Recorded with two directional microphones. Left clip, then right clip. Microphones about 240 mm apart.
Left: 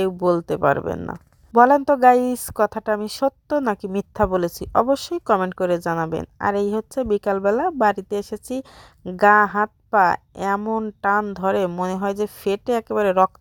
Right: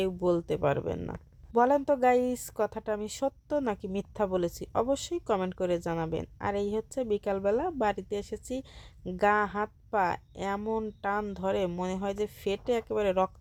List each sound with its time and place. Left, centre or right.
0.0 s a woman's voice: left